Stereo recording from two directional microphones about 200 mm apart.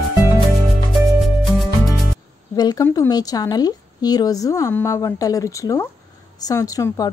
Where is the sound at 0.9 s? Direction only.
Centre (ahead or behind).